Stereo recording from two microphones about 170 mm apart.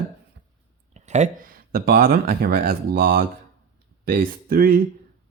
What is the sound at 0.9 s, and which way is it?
Speech, 40° right (ahead or behind).